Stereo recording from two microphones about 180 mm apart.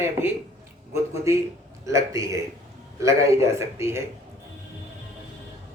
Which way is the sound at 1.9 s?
15° right (ahead or behind).